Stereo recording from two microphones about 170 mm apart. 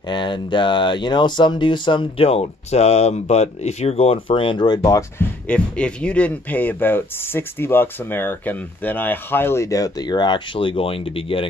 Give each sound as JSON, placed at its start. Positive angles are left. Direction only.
{"t": 0.1, "sound": "speech", "side_deg": 30}
{"t": 5.5, "sound": "speech", "side_deg": 5}